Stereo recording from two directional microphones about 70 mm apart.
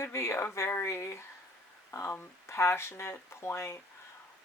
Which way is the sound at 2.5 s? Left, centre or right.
Left.